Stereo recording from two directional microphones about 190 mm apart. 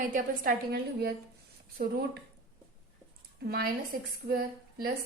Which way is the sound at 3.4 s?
55° right (ahead or behind).